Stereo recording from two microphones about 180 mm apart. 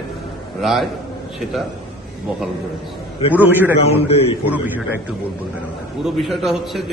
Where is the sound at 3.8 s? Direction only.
35° left (ahead or behind).